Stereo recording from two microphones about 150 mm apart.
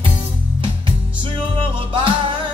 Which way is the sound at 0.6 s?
35° right (ahead or behind).